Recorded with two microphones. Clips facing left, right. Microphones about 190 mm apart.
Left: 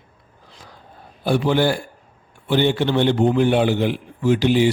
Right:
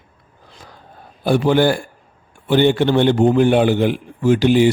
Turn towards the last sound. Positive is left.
turn(degrees=-50)  # may be behind; listen again after turning